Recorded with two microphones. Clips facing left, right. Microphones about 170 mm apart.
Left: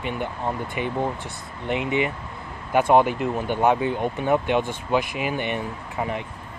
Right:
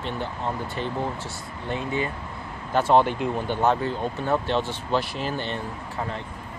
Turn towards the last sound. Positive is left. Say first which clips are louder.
# left 3 dB
turn(degrees=15)  # may be behind; listen again after turning